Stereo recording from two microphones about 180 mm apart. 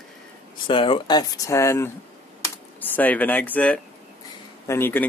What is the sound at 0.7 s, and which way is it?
Speech, 30° left (ahead or behind).